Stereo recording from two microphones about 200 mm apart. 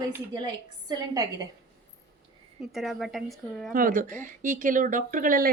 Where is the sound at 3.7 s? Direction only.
45° right (ahead or behind).